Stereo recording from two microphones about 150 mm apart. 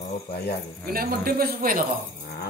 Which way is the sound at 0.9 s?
80° right.